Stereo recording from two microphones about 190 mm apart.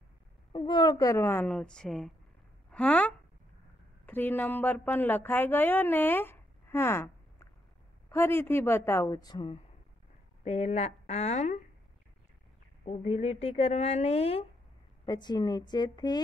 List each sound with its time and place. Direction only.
0.5 s a woman's voice: 25° left (ahead or behind)
10.4 s a woman's voice: 35° left (ahead or behind)
12.8 s a woman's voice: 35° left (ahead or behind)
15.0 s a woman's voice: 20° left (ahead or behind)